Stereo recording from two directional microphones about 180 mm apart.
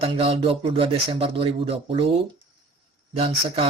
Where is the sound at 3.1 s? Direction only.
30° right (ahead or behind).